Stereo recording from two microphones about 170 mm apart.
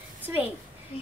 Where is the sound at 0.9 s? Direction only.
35° left (ahead or behind).